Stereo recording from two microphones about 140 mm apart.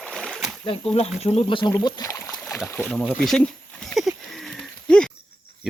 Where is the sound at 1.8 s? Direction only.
30° left (ahead or behind).